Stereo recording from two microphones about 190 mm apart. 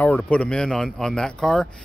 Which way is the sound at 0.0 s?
5° left (ahead or behind).